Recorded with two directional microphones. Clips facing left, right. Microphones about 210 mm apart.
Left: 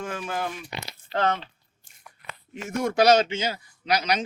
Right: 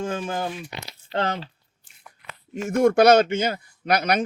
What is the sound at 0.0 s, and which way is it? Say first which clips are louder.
Speech: right 3 dB; 25° right (ahead or behind).